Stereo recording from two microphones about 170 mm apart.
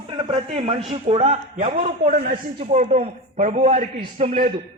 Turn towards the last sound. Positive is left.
turn(degrees=-40)  # may be behind; listen again after turning